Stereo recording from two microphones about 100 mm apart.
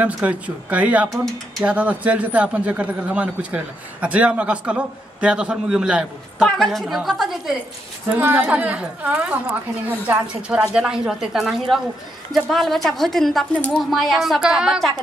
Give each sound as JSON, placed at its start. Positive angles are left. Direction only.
{"t": 0.0, "sound": "a woman's voice", "side_deg": -15}
{"t": 8.2, "sound": "a woman's voice", "side_deg": -20}